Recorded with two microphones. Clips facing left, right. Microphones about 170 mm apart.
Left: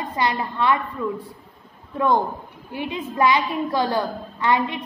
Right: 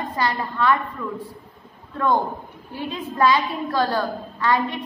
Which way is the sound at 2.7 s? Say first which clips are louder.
Left 1 dB; 15° left (ahead or behind).